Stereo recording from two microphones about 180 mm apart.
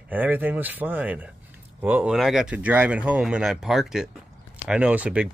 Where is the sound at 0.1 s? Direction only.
10° right (ahead or behind).